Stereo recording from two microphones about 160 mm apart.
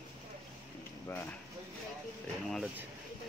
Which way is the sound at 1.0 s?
15° left (ahead or behind).